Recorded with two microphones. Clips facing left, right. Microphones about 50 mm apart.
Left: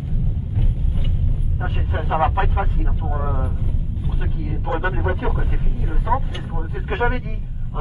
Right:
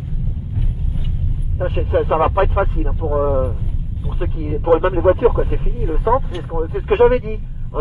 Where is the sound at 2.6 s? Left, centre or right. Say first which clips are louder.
Right 6 dB; right.